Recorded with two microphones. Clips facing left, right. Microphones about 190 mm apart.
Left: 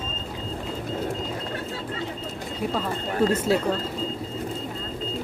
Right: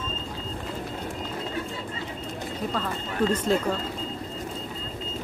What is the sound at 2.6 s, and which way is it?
Speech, 10° left (ahead or behind).